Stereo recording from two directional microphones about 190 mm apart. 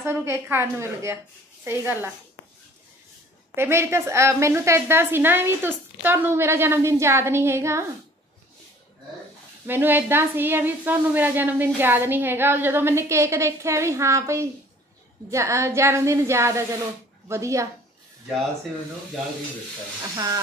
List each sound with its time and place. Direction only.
0.0 s a woman's voice: 15° right (ahead or behind)
3.5 s a woman's voice: 15° right (ahead or behind)
9.7 s a woman's voice: 10° right (ahead or behind)
20.0 s speech: 20° right (ahead or behind)